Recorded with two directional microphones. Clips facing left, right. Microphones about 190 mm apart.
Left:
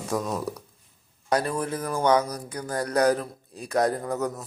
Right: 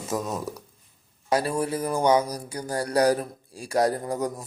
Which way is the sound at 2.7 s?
30° right (ahead or behind).